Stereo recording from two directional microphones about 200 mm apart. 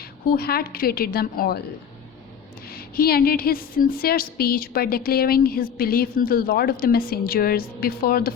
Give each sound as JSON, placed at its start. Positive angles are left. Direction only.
{"t": 0.3, "sound": "a woman's voice", "side_deg": 50}
{"t": 2.7, "sound": "a woman's voice", "side_deg": 50}